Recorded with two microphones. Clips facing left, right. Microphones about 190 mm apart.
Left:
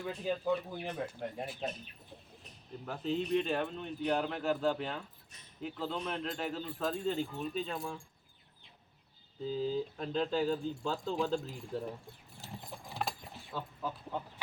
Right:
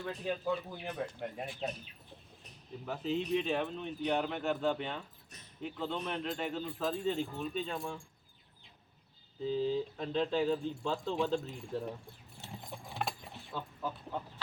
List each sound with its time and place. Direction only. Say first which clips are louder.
0.1 s speech: left 2 dB; centre (ahead or behind)
2.8 s speech: even; centre (ahead or behind)
9.4 s speech: right 2 dB; centre (ahead or behind)
12.4 s keys jangling: even; centre (ahead or behind)